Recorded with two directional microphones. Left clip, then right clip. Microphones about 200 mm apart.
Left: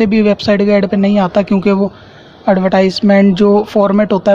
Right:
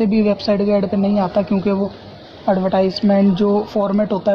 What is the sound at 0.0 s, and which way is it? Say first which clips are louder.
Speech: left 5 dB; 20° left (ahead or behind).